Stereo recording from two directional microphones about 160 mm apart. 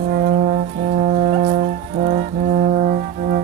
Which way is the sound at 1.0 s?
50° right (ahead or behind).